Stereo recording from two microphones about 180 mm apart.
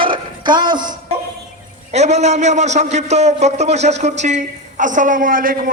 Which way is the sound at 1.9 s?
40° right (ahead or behind).